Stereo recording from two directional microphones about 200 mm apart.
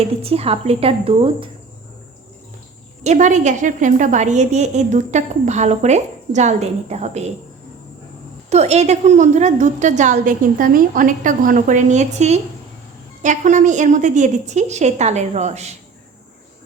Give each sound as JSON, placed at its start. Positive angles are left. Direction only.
{"t": 0.0, "sound": "a woman's voice", "side_deg": -30}
{"t": 3.0, "sound": "a woman's voice", "side_deg": -35}
{"t": 8.4, "sound": "a woman's voice", "side_deg": -35}